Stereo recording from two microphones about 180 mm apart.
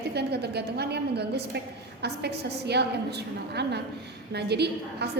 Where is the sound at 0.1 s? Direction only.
65° right (ahead or behind).